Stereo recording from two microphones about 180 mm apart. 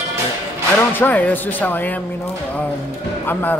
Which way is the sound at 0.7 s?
10° left (ahead or behind).